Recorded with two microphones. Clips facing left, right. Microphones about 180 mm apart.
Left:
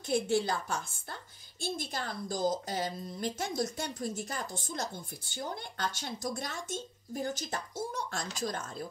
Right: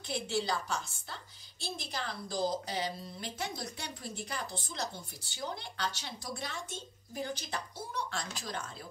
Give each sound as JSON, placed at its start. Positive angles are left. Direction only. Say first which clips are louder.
{"t": 0.1, "sound": "a woman's voice", "louder": "left 5 dB", "side_deg": 50}